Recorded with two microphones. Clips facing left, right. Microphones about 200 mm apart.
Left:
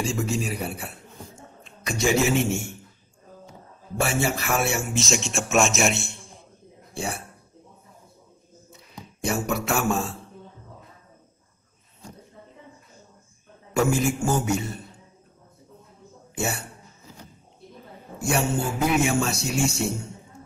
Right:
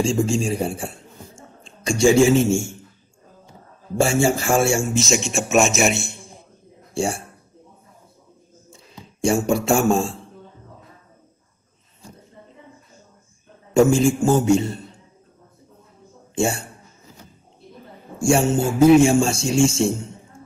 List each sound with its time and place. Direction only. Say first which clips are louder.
0.0 s speech: right 6 dB; 25° right (ahead or behind)
1.6 s a sound: right 8 dB; 30° right (ahead or behind)
2.3 s speech: right 6 dB; 25° right (ahead or behind)
4.0 s speech: right 7 dB; 25° right (ahead or behind)
4.9 s a man's voice: right 5 dB; centre (ahead or behind)
6.9 s speech: right 8 dB; 30° right (ahead or behind)
8.6 s a sound: even; 30° right (ahead or behind)
13.7 s speech: right 7 dB; 25° right (ahead or behind)
16.3 s a man's voice: right 7 dB; 25° right (ahead or behind)
18.2 s speech: right 7 dB; 25° right (ahead or behind)